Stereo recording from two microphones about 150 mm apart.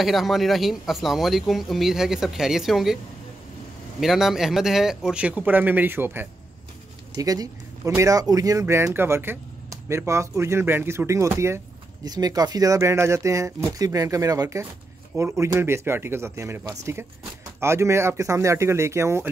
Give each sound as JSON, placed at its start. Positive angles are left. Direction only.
{"t": 0.0, "sound": "speech", "side_deg": 0}
{"t": 4.0, "sound": "speech", "side_deg": 0}
{"t": 7.2, "sound": "speech", "side_deg": -25}